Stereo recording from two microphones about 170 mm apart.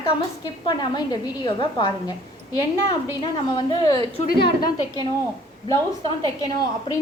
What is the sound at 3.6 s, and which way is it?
A woman's voice, 25° left (ahead or behind).